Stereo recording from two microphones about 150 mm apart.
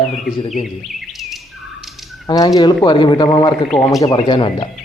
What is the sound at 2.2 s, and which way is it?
A man's voice, 25° left (ahead or behind).